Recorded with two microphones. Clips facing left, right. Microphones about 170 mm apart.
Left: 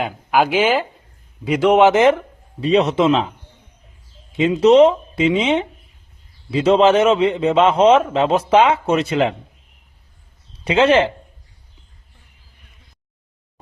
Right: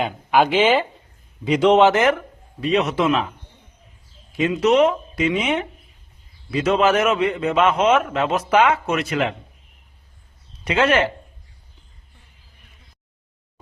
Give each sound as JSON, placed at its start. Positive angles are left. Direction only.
{"t": 0.0, "sound": "speech", "side_deg": 5}
{"t": 1.8, "sound": "a man's voice", "side_deg": 20}
{"t": 2.6, "sound": "a man's voice", "side_deg": 30}
{"t": 10.6, "sound": "a man's voice", "side_deg": 30}